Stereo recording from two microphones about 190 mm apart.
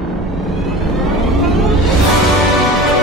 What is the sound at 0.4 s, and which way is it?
Vehicle, centre (ahead or behind).